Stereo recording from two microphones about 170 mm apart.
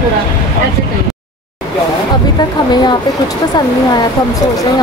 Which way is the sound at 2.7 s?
25° left (ahead or behind).